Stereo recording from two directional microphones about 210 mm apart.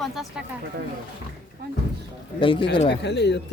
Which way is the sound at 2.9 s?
55° left (ahead or behind).